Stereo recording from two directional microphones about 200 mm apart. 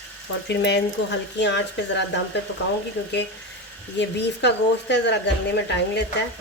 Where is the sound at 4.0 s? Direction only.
60° left (ahead or behind).